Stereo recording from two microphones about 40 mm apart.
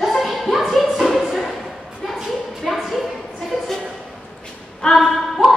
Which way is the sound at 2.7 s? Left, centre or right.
Centre.